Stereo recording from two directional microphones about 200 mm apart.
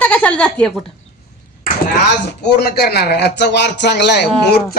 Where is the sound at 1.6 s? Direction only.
50° left (ahead or behind).